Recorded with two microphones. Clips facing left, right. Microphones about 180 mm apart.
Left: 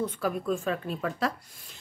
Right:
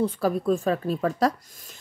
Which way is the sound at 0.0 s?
35° right (ahead or behind).